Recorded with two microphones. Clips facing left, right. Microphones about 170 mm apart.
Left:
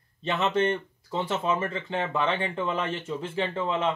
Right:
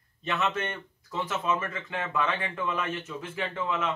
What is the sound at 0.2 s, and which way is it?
Speech, 30° left (ahead or behind).